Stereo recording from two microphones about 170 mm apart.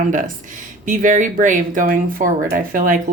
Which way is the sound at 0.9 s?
50° right (ahead or behind).